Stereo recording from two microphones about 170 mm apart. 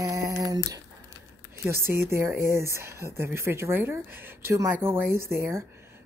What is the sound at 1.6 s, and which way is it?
Speech, 15° right (ahead or behind).